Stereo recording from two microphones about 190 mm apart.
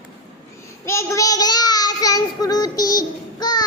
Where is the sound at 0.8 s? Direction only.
15° left (ahead or behind).